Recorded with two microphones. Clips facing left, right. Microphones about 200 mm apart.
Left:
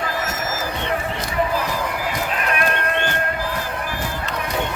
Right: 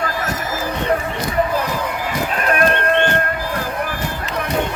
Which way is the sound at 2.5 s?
45° right (ahead or behind).